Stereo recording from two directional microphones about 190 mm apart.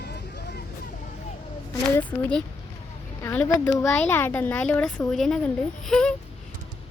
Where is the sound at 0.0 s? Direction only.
60° left (ahead or behind).